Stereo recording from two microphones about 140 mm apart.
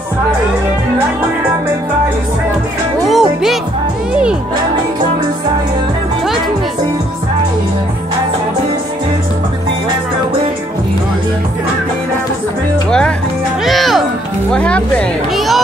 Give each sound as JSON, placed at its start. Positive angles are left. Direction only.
{"t": 3.1, "sound": "music", "side_deg": 0}
{"t": 13.7, "sound": "music", "side_deg": 0}
{"t": 14.5, "sound": "speech", "side_deg": 10}